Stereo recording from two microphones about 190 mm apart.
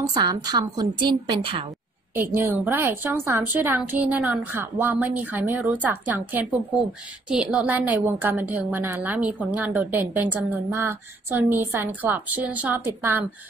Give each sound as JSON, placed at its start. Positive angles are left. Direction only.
{"t": 0.1, "sound": "a woman's voice", "side_deg": -20}
{"t": 2.1, "sound": "a woman's voice", "side_deg": -10}